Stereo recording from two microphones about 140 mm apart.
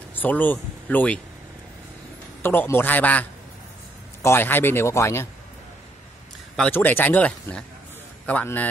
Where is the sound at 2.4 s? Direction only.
15° left (ahead or behind).